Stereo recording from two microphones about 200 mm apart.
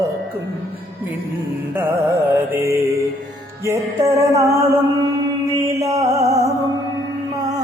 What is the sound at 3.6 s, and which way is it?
Music, 15° right (ahead or behind).